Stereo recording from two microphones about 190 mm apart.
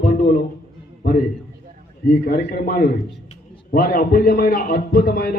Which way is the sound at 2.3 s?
50° left (ahead or behind).